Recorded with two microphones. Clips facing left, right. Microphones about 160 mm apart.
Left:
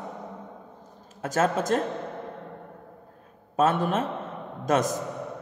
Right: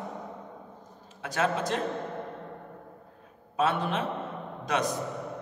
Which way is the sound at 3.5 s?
45° left (ahead or behind).